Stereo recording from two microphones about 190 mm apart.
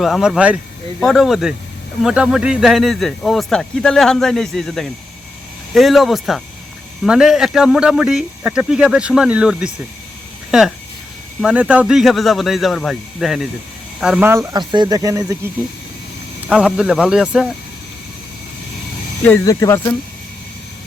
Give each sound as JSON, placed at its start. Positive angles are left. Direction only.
{"t": 0.0, "sound": "speech", "side_deg": 0}
{"t": 11.3, "sound": "speech", "side_deg": -5}
{"t": 16.5, "sound": "speech", "side_deg": -5}
{"t": 19.2, "sound": "speech", "side_deg": 15}